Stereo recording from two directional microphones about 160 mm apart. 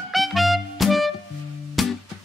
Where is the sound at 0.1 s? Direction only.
Centre (ahead or behind).